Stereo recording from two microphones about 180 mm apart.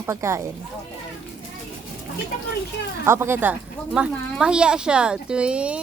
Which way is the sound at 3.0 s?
15° right (ahead or behind).